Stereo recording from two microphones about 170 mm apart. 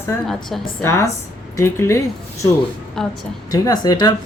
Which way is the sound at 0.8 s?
15° left (ahead or behind).